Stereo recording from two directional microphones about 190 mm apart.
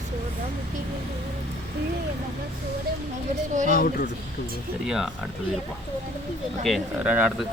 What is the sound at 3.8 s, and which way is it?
Speech, 45° left (ahead or behind).